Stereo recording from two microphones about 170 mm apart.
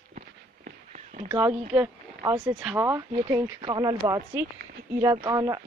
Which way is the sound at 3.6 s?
25° right (ahead or behind).